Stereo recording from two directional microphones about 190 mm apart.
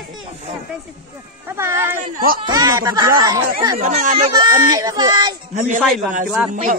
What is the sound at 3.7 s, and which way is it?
Speech, 40° right (ahead or behind).